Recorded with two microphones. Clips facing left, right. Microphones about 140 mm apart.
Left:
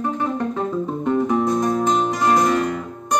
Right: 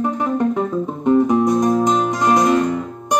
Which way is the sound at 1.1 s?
15° right (ahead or behind).